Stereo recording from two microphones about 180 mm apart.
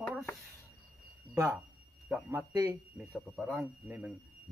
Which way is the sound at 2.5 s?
20° right (ahead or behind).